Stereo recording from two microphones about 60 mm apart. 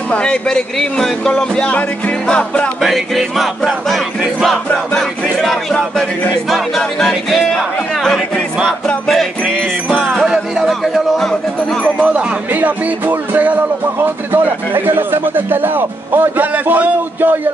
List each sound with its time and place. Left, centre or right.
0.1 s speech: centre
2.8 s music: centre
5.4 s speech: centre
9.8 s music: centre
10.2 s music: centre
12.0 s music: right
13.9 s speech: right